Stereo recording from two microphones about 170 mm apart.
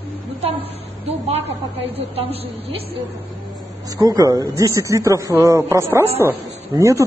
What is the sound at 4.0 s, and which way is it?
Speech, 20° right (ahead or behind).